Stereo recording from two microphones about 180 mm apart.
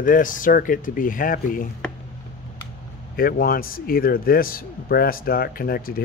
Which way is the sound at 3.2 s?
55° left (ahead or behind).